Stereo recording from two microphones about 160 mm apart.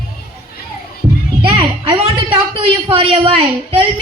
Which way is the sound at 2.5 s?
35° right (ahead or behind).